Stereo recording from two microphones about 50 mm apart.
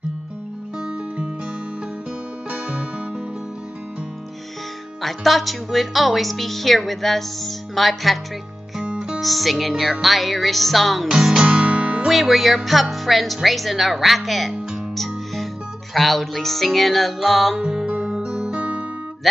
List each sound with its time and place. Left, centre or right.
0.7 s music: centre
2.5 s music: centre
5.0 s speech: centre
9.2 s speech: centre
11.1 s music: centre
11.4 s guitar: right
12.1 s speech: centre
15.9 s speech: centre
17.6 s music: centre